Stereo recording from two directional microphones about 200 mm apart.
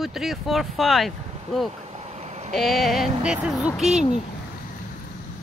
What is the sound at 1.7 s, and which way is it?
Vehicle, 30° right (ahead or behind).